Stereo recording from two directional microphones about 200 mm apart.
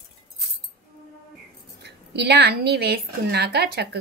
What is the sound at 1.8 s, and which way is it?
A woman's voice, 60° right (ahead or behind).